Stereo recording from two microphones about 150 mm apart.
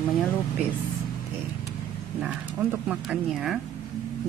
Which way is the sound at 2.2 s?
10° right (ahead or behind).